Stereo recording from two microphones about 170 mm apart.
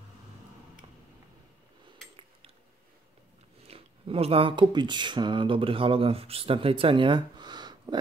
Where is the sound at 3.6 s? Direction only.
35° right (ahead or behind).